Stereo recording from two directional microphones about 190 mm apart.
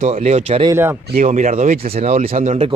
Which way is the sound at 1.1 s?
40° right (ahead or behind).